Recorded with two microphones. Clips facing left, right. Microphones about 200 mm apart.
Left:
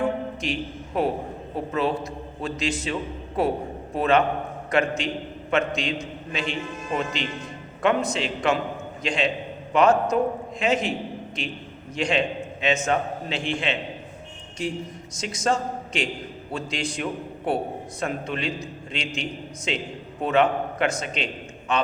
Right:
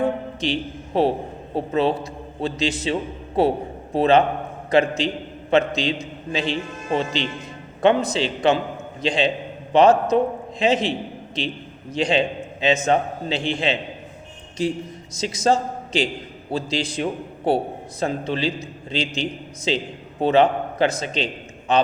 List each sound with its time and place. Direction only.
0.0 s music: 35° right (ahead or behind)
1.5 s a man's voice: 35° right (ahead or behind)
11.9 s a man's voice: 35° right (ahead or behind)
15.1 s a man's voice: 35° right (ahead or behind)